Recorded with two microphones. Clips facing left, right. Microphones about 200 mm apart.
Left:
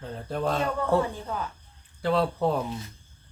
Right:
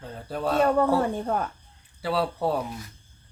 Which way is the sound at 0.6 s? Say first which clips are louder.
Right 6 dB; 55° right (ahead or behind).